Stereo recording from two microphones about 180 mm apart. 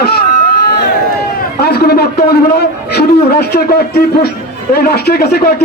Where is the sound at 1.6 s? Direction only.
60° left (ahead or behind).